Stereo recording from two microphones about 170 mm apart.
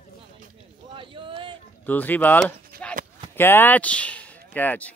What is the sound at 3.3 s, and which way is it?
Speech, 10° left (ahead or behind).